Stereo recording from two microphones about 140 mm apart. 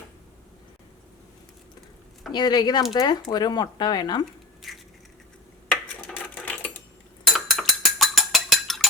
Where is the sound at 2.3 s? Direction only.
30° left (ahead or behind).